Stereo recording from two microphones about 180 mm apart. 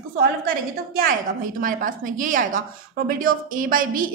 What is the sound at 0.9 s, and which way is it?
A woman's voice, 50° right (ahead or behind).